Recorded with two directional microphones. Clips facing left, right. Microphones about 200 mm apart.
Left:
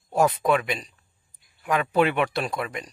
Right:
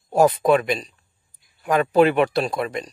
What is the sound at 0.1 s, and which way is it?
A man's voice, 35° right (ahead or behind).